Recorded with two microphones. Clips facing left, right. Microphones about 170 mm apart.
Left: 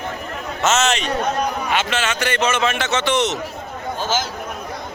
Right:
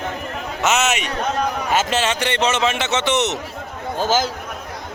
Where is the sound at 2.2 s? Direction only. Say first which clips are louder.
Even; 25° right (ahead or behind).